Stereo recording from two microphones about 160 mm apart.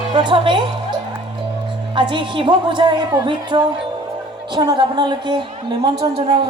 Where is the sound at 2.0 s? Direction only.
30° right (ahead or behind).